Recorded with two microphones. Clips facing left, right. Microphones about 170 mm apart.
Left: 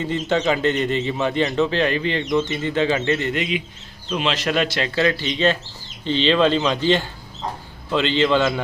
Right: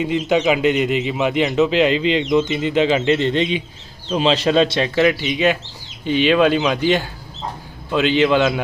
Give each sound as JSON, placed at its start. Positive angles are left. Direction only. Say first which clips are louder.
{"t": 0.0, "sound": "a man's voice", "louder": "right 4 dB", "side_deg": -15}